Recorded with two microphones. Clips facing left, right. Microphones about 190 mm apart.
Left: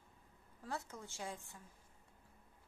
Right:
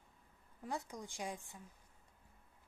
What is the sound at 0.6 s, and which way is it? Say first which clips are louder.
A woman's voice: right 2 dB; 15° right (ahead or behind).